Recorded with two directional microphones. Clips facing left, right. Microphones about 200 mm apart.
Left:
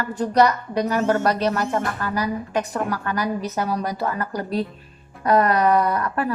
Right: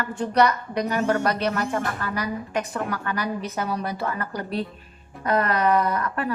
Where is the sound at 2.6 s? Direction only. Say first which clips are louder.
Left 3 dB; 35° left (ahead or behind).